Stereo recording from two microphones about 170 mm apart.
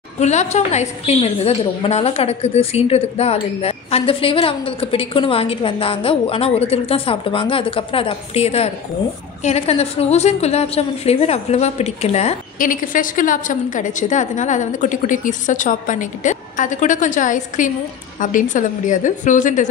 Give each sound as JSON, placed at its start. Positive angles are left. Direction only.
{"t": 0.2, "sound": "a woman's voice", "side_deg": 40}